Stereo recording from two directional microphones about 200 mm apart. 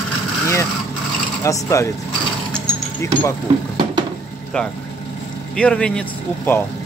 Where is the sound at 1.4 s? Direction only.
15° left (ahead or behind).